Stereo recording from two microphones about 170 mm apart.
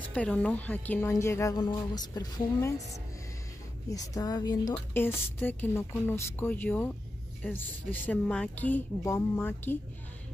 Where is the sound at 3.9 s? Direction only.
20° left (ahead or behind).